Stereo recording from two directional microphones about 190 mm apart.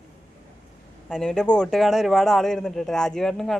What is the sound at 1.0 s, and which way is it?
Speech, 5° left (ahead or behind).